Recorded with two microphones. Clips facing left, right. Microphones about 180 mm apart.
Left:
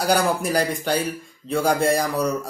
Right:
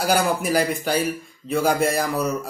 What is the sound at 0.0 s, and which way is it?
A man's voice, 5° right (ahead or behind).